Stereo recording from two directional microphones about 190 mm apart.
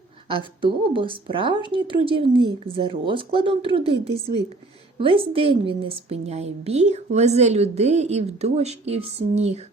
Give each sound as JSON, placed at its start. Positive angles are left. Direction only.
{"t": 0.3, "sound": "a woman's voice", "side_deg": -25}